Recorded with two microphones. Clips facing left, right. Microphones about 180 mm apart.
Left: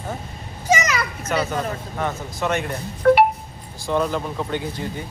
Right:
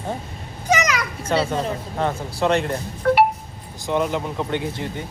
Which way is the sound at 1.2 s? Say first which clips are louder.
Right 3 dB; 30° right (ahead or behind).